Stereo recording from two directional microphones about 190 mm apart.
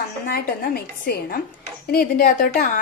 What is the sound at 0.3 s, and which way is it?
A woman's voice, 55° left (ahead or behind).